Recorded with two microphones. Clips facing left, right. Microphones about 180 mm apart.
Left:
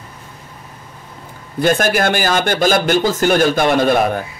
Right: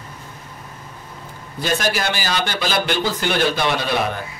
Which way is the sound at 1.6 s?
50° left (ahead or behind).